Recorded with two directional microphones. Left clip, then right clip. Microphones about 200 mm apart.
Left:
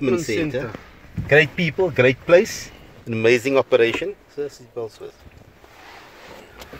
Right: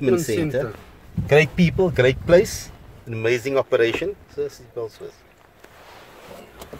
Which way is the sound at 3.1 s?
30° left (ahead or behind).